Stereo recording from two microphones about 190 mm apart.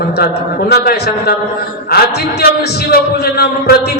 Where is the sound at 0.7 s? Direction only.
55° left (ahead or behind).